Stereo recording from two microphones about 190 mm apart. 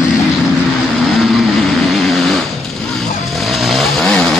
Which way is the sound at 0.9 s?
Centre (ahead or behind).